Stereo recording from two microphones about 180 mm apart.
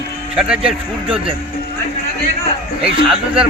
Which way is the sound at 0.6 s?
30° right (ahead or behind).